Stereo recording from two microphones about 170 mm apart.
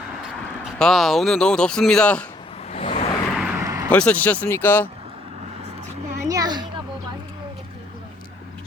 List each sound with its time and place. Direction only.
0.2 s speech: centre (ahead or behind)
2.7 s vehicle: 35° left (ahead or behind)
3.3 s vehicle: 5° right (ahead or behind)
3.6 s vehicle: 20° right (ahead or behind)
3.8 s speech: 10° left (ahead or behind)
6.2 s a sound: 20° right (ahead or behind)